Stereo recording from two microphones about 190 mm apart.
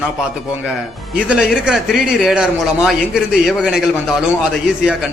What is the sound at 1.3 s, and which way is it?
Speech, 5° right (ahead or behind).